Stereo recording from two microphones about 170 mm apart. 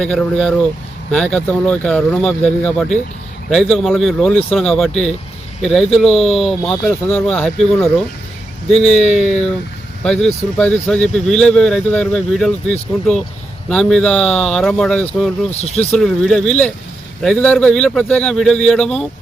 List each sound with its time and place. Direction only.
0.0 s speech: 5° left (ahead or behind)